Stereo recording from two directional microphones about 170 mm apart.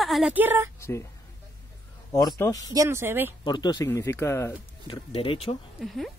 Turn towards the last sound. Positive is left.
turn(degrees=0)  # may be behind; listen again after turning